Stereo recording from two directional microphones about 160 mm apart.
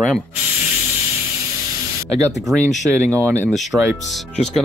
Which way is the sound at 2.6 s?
50° left (ahead or behind).